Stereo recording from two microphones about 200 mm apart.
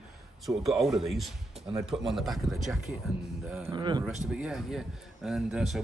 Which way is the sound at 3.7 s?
20° right (ahead or behind).